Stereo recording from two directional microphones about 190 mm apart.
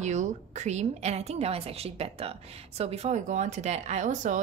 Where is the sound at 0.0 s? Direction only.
40° right (ahead or behind).